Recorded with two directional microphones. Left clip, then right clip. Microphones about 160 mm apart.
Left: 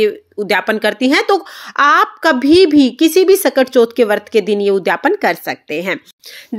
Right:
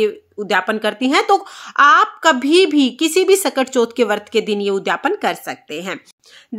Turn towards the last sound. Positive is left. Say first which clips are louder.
# left 6 dB
turn(degrees=20)  # may be behind; listen again after turning